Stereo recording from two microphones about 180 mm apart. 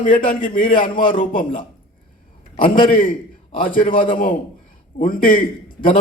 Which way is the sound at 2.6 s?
50° left (ahead or behind).